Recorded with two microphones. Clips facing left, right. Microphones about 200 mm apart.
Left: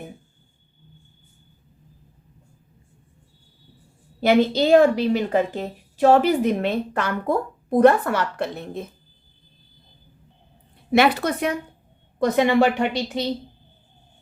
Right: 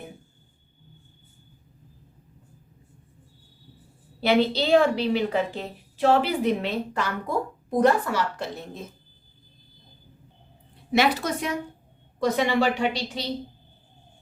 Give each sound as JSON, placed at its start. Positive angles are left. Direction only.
{"t": 4.2, "sound": "a woman's voice", "side_deg": 45}
{"t": 10.9, "sound": "a woman's voice", "side_deg": 60}